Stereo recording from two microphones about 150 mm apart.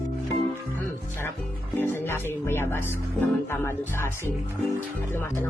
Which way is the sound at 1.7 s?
15° left (ahead or behind).